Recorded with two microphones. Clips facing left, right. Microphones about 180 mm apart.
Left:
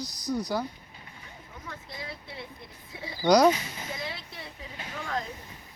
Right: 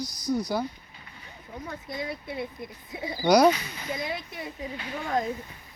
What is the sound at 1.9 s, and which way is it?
Speech, 25° right (ahead or behind).